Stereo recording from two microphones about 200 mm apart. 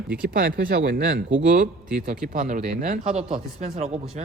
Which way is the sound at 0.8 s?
60° right (ahead or behind).